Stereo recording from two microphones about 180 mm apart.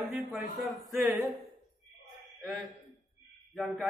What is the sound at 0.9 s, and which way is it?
Speech, 15° right (ahead or behind).